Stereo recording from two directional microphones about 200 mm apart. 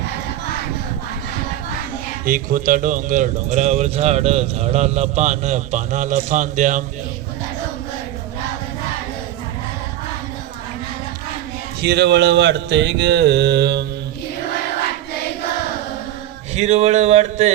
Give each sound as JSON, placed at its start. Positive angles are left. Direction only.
{"t": 2.2, "sound": "speech", "side_deg": -45}
{"t": 11.8, "sound": "mantra", "side_deg": -55}
{"t": 16.6, "sound": "speech", "side_deg": -35}